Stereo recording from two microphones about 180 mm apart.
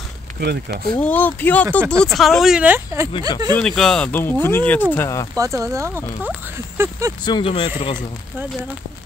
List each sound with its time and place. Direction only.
0.4 s speech: 65° right (ahead or behind)
1.0 s speech: 10° left (ahead or behind); by 3.1 s 10° right (ahead or behind)
3.5 s speech: 5° left (ahead or behind)
5.3 s speech: 20° right (ahead or behind)
7.2 s speech: 25° left (ahead or behind)